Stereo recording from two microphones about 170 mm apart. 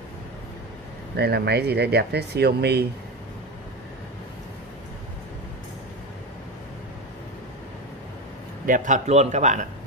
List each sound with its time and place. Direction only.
1.1 s speech: 75° right (ahead or behind)
8.6 s speech: 50° right (ahead or behind)